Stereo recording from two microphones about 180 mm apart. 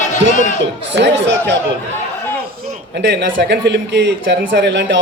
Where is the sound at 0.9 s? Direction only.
75° right (ahead or behind).